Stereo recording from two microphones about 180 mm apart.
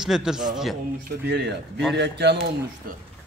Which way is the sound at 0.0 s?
5° right (ahead or behind).